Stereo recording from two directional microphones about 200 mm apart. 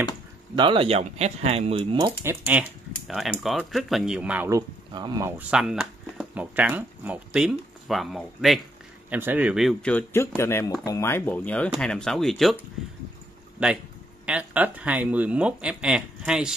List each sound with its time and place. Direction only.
0.6 s speech: 25° right (ahead or behind)
2.2 s speech: 10° right (ahead or behind)
5.5 s speech: 5° right (ahead or behind)
13.6 s speech: 5° right (ahead or behind)